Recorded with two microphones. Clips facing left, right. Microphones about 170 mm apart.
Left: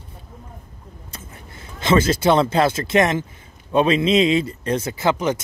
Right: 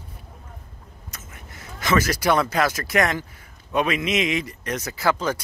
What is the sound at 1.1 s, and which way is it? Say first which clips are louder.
Speech: left 3 dB; 30° left (ahead or behind).